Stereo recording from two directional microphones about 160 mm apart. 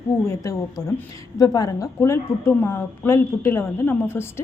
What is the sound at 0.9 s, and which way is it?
A woman's voice, 20° left (ahead or behind).